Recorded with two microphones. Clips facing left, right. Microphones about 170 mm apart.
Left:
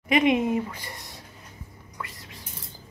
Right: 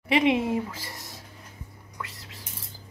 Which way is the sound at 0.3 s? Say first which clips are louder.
Left 1 dB; 15° left (ahead or behind).